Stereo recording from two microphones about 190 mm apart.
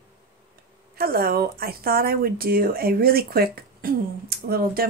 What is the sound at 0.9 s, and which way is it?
Speech, 50° right (ahead or behind).